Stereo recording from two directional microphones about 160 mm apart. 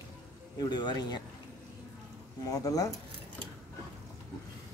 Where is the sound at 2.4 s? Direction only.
20° left (ahead or behind).